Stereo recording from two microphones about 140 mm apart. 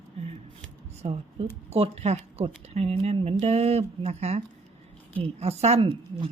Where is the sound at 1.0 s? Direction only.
45° right (ahead or behind).